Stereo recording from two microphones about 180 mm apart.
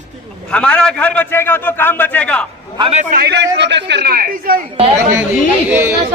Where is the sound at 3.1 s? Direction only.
65° right (ahead or behind).